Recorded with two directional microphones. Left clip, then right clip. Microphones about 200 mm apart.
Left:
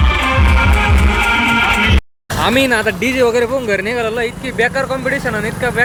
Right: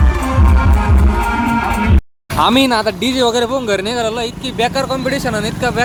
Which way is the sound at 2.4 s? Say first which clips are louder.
Right 1 dB; 30° right (ahead or behind).